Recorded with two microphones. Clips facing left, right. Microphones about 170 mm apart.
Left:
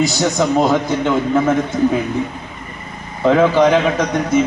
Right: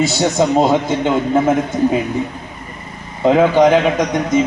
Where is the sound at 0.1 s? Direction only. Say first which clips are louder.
Right 2 dB; 25° right (ahead or behind).